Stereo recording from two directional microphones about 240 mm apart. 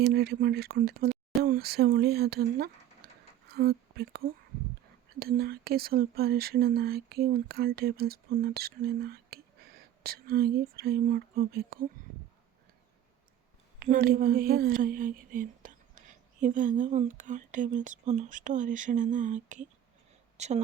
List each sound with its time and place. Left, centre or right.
0.0 s speech: right
13.7 s speech: right
20.3 s a sound: right